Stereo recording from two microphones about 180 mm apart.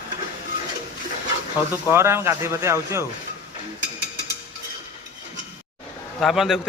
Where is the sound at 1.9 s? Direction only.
15° right (ahead or behind).